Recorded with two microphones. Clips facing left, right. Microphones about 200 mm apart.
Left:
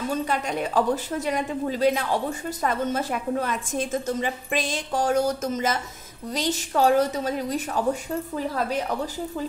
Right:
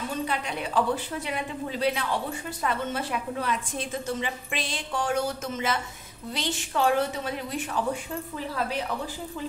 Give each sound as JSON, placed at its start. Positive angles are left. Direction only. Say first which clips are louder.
{"t": 0.3, "sound": "a woman's voice", "louder": "left 4 dB", "side_deg": 45}